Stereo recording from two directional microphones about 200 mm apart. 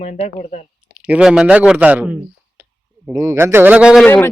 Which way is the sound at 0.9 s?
5° right (ahead or behind).